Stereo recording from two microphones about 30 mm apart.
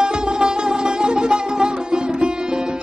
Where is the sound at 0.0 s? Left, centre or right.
Right.